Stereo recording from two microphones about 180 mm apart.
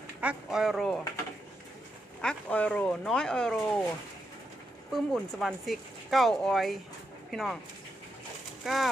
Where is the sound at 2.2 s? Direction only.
5° left (ahead or behind).